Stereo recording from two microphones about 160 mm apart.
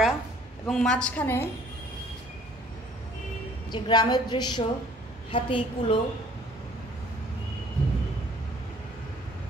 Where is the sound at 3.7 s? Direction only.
25° left (ahead or behind).